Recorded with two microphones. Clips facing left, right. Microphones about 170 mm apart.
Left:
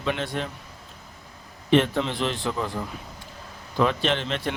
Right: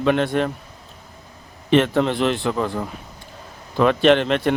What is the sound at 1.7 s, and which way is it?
A man's voice, 70° right (ahead or behind).